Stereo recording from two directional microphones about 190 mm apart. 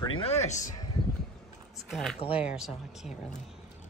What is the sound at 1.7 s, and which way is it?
Speech, centre (ahead or behind).